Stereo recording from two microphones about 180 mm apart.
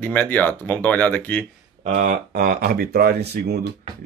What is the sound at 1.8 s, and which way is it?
Speech, 40° right (ahead or behind).